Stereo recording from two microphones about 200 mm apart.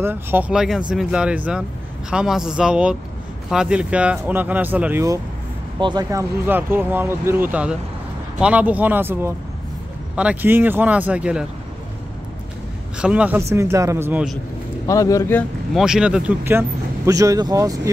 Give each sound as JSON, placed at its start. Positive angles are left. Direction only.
{"t": 0.0, "sound": "speech", "side_deg": -10}
{"t": 13.0, "sound": "speech", "side_deg": -5}
{"t": 14.9, "sound": "a man's voice", "side_deg": 15}
{"t": 15.7, "sound": "speech", "side_deg": -5}